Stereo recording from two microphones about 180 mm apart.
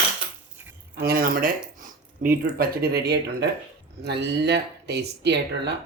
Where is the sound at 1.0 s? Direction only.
55° right (ahead or behind).